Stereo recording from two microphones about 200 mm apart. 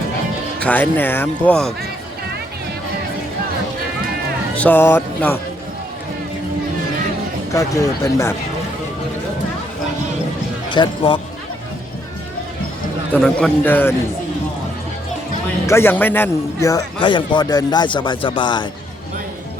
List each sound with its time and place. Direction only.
0.6 s speech: 10° left (ahead or behind)
4.5 s speech: 10° left (ahead or behind)
7.5 s speech: 15° left (ahead or behind)
10.7 s speech: 25° left (ahead or behind)
13.1 s speech: 5° left (ahead or behind)
15.6 s a man's voice: 10° left (ahead or behind)